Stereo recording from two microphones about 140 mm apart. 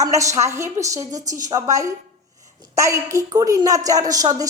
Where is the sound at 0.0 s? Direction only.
25° right (ahead or behind).